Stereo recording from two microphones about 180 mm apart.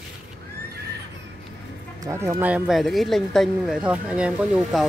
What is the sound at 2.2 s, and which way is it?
Speech, 10° right (ahead or behind).